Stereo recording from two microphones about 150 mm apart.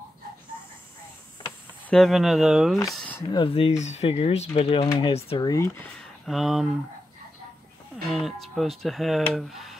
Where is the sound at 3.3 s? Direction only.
35° left (ahead or behind).